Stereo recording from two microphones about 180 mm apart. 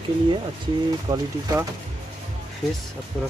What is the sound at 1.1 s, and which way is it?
Speech, 15° right (ahead or behind).